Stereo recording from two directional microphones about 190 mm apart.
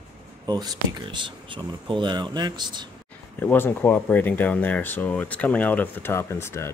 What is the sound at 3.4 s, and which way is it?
Speech, 10° left (ahead or behind).